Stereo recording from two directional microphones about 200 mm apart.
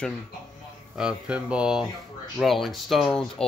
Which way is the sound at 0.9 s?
5° right (ahead or behind).